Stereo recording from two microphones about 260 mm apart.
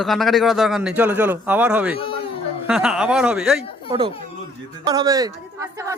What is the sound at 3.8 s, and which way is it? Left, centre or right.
A woman's voice, centre.